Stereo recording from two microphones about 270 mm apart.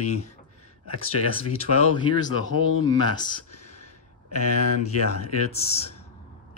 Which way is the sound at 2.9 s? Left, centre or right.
Centre.